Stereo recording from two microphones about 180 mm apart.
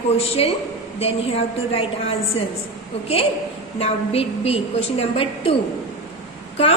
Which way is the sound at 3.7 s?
35° left (ahead or behind).